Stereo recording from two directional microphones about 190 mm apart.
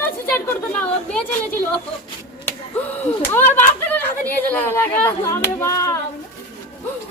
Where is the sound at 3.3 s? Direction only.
10° left (ahead or behind).